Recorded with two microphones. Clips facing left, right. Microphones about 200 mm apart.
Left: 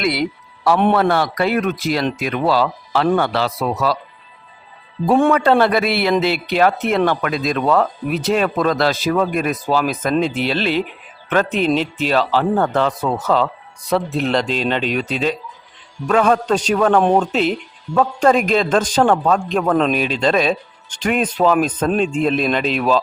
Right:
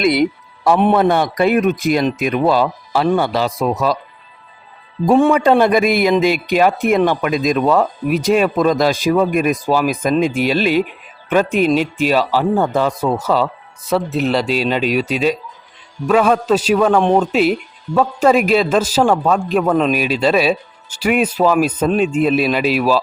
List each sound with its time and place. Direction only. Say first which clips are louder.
0.0 s a man's voice: right 5 dB; 20° right (ahead or behind)
5.3 s a man's voice: right 2 dB; 15° right (ahead or behind)